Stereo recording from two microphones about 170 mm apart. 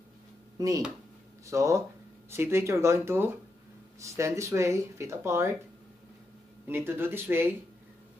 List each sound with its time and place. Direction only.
0.6 s speech: 20° right (ahead or behind)
6.7 s speech: 15° right (ahead or behind)